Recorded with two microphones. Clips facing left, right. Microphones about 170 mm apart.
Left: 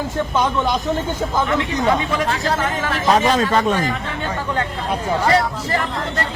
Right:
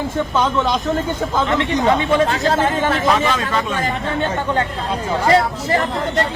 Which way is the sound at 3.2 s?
40° left (ahead or behind).